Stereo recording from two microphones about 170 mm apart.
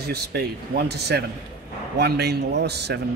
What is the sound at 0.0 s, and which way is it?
A man's voice, 70° right (ahead or behind).